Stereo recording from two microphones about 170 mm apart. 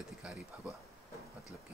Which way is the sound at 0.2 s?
5° right (ahead or behind).